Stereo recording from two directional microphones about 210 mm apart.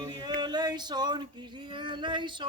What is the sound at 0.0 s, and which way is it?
Male singing, 20° right (ahead or behind).